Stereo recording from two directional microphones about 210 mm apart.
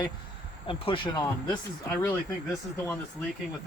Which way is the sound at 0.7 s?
25° left (ahead or behind).